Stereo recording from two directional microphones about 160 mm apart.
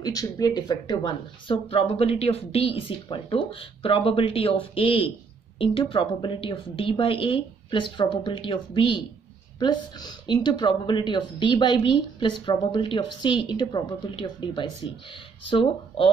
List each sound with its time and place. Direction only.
0.0 s a woman's voice: 20° left (ahead or behind)